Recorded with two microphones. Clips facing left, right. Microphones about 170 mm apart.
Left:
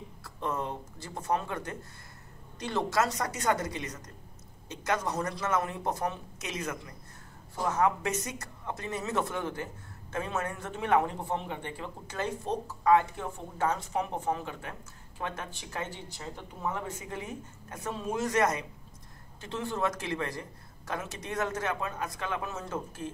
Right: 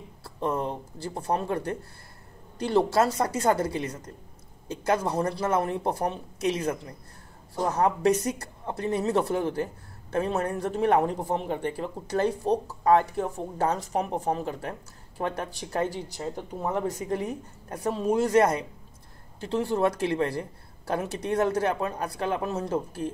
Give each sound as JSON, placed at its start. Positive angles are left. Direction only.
{"t": 0.2, "sound": "a man's voice", "side_deg": -30}